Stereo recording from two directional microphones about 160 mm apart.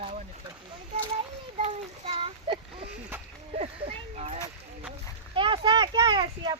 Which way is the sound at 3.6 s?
40° right (ahead or behind).